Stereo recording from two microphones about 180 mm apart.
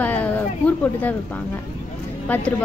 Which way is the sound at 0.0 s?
10° left (ahead or behind).